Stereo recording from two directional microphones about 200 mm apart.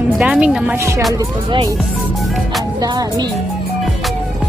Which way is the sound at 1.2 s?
25° right (ahead or behind).